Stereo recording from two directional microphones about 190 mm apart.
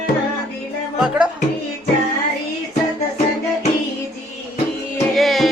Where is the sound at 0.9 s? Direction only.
5° right (ahead or behind).